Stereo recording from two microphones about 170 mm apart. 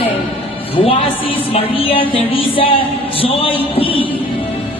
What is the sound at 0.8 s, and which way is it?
Music, 35° left (ahead or behind).